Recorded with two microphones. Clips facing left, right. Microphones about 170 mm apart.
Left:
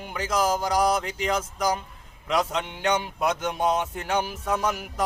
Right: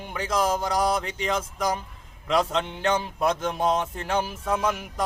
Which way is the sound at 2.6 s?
30° right (ahead or behind).